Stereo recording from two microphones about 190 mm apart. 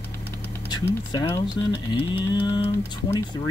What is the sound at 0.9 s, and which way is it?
Ratchet, 20° left (ahead or behind).